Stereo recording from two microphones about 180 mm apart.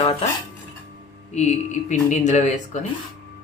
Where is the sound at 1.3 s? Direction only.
40° left (ahead or behind).